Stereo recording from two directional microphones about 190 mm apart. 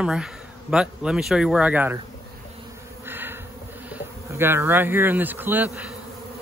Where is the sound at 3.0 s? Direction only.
10° right (ahead or behind).